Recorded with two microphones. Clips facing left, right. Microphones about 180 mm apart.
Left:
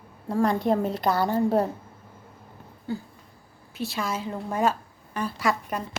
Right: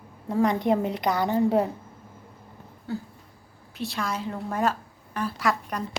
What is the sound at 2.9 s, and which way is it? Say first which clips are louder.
A woman's voice: left 1 dB; 5° right (ahead or behind).